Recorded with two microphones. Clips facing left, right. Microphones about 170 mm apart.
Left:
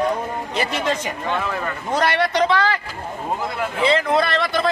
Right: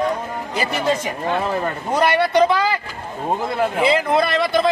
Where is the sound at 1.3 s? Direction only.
35° right (ahead or behind).